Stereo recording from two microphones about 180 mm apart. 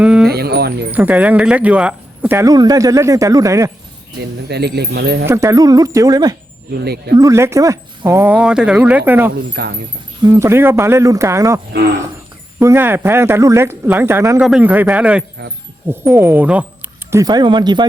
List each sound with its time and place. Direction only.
0.0 s music: 5° right (ahead or behind)
0.3 s music: 60° right (ahead or behind)
0.9 s speech: 10° right (ahead or behind)
4.2 s speech: 65° right (ahead or behind)
5.2 s speech: 15° right (ahead or behind)
6.7 s speech: 65° right (ahead or behind)
7.2 s speech: 15° right (ahead or behind)
9.6 s speech: 60° right (ahead or behind)
10.2 s speech: 15° right (ahead or behind)